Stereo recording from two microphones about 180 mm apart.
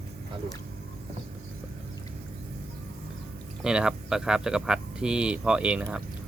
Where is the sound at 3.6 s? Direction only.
5° right (ahead or behind).